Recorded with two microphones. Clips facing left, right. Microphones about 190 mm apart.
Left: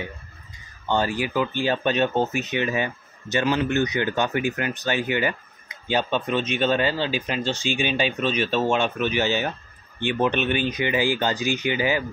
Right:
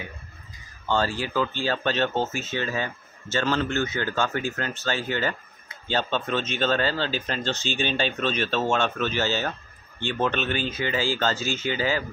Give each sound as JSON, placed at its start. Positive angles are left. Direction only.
{"t": 0.8, "sound": "speech", "side_deg": 15}